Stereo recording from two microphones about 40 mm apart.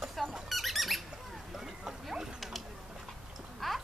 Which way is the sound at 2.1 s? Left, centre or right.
Centre.